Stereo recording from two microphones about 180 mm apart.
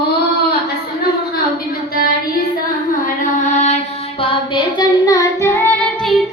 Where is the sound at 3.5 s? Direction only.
40° left (ahead or behind).